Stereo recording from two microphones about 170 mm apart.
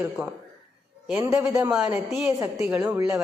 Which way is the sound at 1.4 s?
10° right (ahead or behind).